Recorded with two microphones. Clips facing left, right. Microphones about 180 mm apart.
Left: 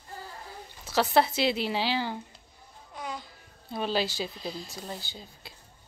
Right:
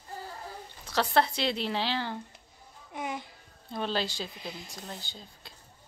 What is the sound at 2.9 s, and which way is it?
Babbling, 20° right (ahead or behind).